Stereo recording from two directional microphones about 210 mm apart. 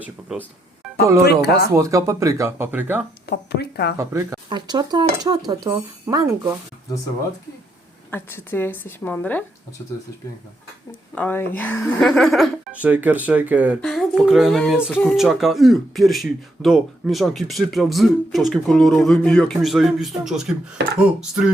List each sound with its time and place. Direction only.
1.2 s speech: 50° left (ahead or behind)
1.7 s speech: 15° right (ahead or behind)
3.2 s speech: 50° left (ahead or behind)
3.9 s speech: 15° right (ahead or behind)
8.1 s a woman's voice: 10° left (ahead or behind)
11.1 s speech: 10° left (ahead or behind)